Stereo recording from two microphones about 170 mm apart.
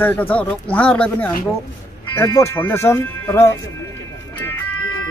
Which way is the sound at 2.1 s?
20° left (ahead or behind).